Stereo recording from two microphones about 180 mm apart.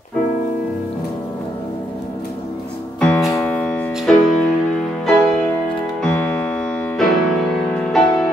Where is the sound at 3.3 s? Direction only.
5° left (ahead or behind).